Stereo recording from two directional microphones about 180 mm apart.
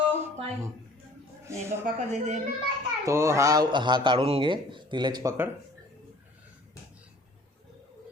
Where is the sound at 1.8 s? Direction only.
40° right (ahead or behind).